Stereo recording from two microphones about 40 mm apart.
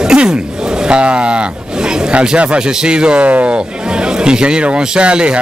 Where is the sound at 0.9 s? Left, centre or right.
Right.